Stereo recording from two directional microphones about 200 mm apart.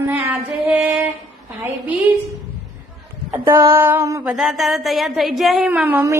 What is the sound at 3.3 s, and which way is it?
Music, 10° right (ahead or behind).